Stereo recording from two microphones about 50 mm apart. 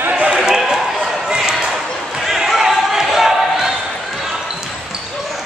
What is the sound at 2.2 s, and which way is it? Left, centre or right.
Basketball bounce, centre.